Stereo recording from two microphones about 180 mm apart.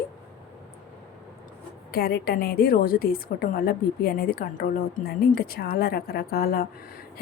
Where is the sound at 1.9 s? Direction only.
60° left (ahead or behind).